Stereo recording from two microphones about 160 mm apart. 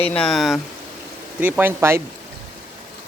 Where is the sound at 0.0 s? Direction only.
5° left (ahead or behind).